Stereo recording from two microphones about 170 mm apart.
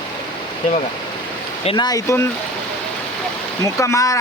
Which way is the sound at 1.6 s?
25° left (ahead or behind).